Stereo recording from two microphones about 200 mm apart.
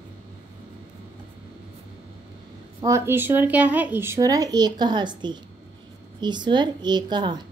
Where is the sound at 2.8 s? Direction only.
15° right (ahead or behind).